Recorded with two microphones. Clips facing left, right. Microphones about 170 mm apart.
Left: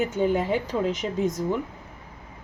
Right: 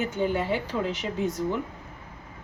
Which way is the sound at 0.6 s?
45° left (ahead or behind).